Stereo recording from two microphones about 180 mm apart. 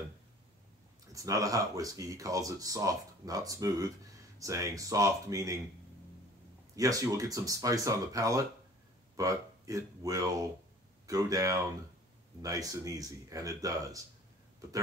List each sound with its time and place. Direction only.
1.1 s speech: 20° right (ahead or behind)
6.7 s speech: 20° right (ahead or behind)